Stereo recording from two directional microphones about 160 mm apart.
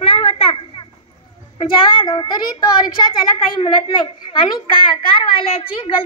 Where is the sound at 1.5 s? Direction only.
30° left (ahead or behind).